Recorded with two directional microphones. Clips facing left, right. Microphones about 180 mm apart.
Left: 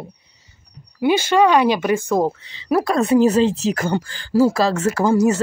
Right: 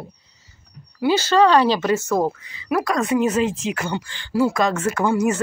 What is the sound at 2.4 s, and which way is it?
Speech, 30° left (ahead or behind).